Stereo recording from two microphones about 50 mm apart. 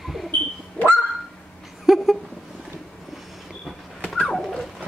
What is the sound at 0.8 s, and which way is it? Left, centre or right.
Goose, left.